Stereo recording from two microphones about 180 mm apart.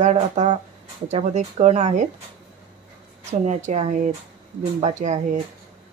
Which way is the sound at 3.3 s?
40° right (ahead or behind).